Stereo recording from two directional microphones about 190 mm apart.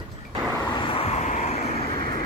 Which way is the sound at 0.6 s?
25° left (ahead or behind).